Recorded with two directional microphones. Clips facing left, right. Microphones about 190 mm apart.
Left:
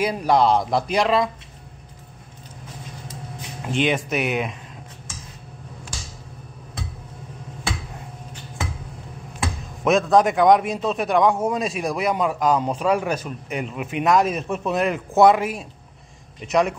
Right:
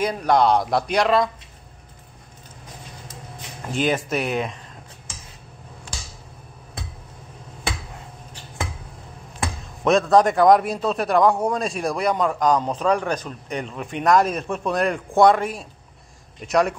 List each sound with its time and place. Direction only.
0.0 s a man's voice: 5° left (ahead or behind)
3.9 s a man's voice: 5° left (ahead or behind)
9.8 s a man's voice: centre (ahead or behind)